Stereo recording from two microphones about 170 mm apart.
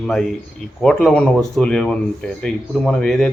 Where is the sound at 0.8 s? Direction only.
5° left (ahead or behind).